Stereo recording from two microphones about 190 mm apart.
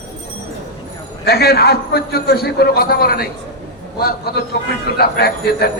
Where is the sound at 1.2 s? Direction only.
55° left (ahead or behind).